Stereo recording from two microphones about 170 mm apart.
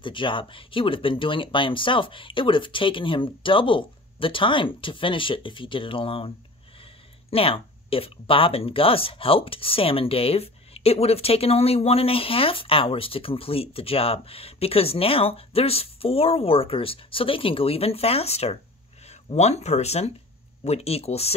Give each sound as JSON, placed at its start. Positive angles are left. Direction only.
{"t": 0.0, "sound": "speech", "side_deg": 30}